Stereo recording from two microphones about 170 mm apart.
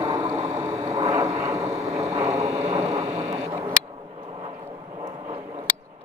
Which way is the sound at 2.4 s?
35° right (ahead or behind).